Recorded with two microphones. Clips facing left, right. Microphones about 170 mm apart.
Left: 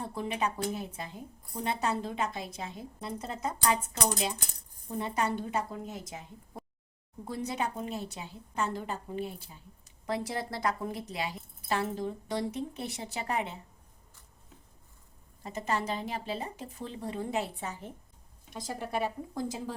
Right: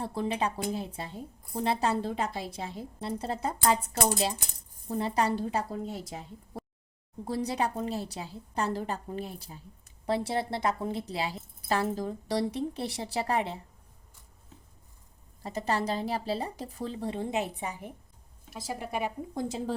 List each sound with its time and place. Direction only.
0.0 s a woman's voice: 30° right (ahead or behind)
15.4 s a woman's voice: 35° right (ahead or behind)